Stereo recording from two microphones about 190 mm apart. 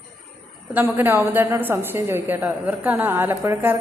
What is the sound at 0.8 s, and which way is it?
A woman's voice, 10° right (ahead or behind).